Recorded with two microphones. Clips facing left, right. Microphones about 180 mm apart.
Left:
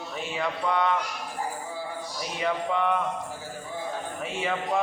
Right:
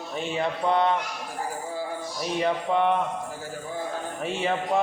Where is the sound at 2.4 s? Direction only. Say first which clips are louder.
Right 2 dB; 30° right (ahead or behind).